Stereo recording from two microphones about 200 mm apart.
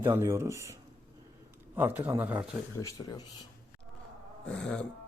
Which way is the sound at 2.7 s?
15° left (ahead or behind).